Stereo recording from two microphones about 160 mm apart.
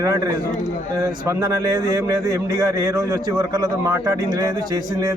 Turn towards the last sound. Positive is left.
turn(degrees=-20)  # may be behind; listen again after turning